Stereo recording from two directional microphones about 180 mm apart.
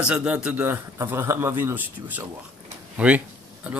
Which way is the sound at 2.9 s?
10° right (ahead or behind).